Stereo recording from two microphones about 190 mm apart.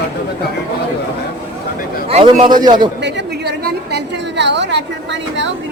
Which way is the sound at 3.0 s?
65° right (ahead or behind).